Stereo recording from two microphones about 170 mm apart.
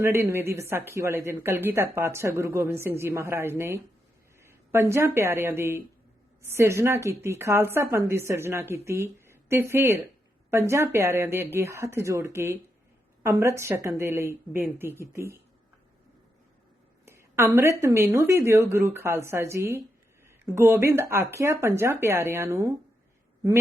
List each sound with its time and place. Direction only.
0.0 s a woman's voice: 15° right (ahead or behind)
17.1 s a woman's voice: 15° right (ahead or behind)